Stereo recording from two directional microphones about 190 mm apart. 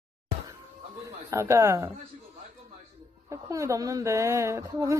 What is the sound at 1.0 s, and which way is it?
Speech, 15° right (ahead or behind).